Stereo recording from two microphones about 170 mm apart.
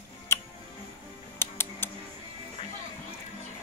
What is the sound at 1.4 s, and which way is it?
Music, 15° left (ahead or behind).